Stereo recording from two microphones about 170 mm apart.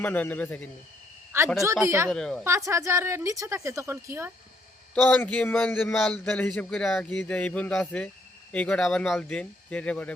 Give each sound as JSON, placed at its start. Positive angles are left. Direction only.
{"t": 0.0, "sound": "speech", "side_deg": 10}
{"t": 1.8, "sound": "a woman's voice", "side_deg": -15}
{"t": 2.0, "sound": "a woman's voice", "side_deg": 5}
{"t": 2.4, "sound": "a woman's voice", "side_deg": -15}
{"t": 5.0, "sound": "speech", "side_deg": 10}